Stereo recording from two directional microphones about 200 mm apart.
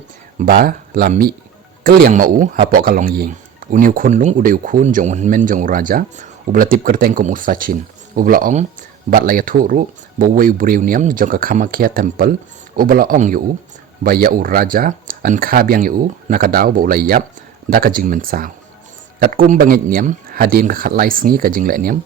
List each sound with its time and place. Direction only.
0.3 s speech: 45° right (ahead or behind)